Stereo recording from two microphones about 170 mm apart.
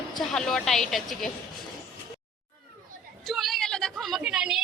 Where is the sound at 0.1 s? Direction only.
5° left (ahead or behind).